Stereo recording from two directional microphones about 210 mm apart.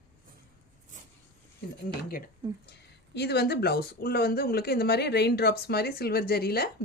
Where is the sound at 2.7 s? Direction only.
50° left (ahead or behind).